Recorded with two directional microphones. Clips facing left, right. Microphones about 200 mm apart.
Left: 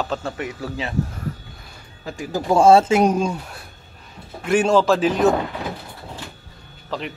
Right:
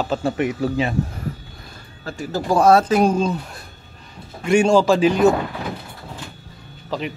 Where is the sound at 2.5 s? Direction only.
25° left (ahead or behind); by 5.3 s centre (ahead or behind).